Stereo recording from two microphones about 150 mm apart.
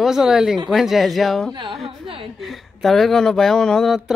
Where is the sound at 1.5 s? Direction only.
30° right (ahead or behind).